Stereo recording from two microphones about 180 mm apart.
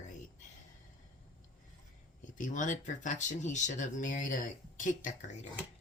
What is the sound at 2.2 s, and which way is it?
Speech, 45° left (ahead or behind).